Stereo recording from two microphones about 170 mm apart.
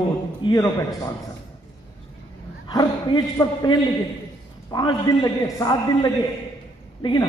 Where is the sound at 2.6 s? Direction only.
25° left (ahead or behind).